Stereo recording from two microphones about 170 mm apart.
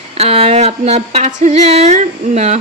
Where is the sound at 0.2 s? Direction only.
35° right (ahead or behind).